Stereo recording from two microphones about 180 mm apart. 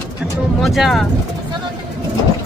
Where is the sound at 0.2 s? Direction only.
Centre (ahead or behind).